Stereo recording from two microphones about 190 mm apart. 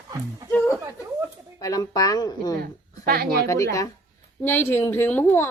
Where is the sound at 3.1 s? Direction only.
55° right (ahead or behind).